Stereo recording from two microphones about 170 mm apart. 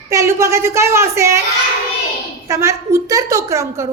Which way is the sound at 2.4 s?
20° right (ahead or behind).